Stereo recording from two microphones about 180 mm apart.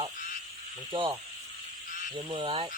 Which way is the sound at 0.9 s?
25° right (ahead or behind).